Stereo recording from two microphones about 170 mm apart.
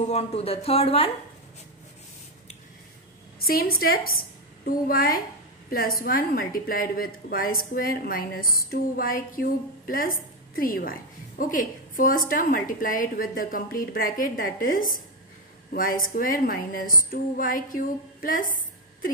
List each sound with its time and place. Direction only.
0.0 s speech: 40° left (ahead or behind)
3.3 s a woman's voice: 60° left (ahead or behind)